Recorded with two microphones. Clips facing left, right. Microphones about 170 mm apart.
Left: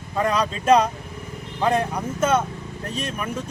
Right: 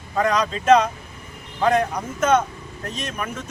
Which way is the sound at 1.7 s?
30° left (ahead or behind).